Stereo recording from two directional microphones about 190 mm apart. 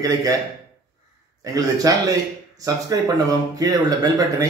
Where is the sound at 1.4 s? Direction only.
20° right (ahead or behind).